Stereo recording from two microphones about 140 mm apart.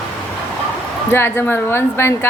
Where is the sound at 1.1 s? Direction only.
15° left (ahead or behind).